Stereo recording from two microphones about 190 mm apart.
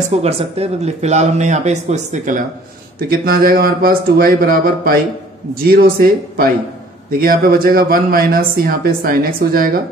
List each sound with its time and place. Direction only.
0.1 s speech: 35° right (ahead or behind)
3.0 s speech: 50° right (ahead or behind)